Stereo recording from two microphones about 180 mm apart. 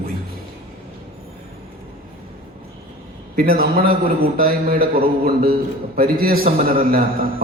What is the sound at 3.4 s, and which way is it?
A man's voice, 55° right (ahead or behind).